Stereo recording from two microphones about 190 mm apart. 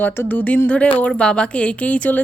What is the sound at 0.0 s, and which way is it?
A woman's voice, 10° left (ahead or behind).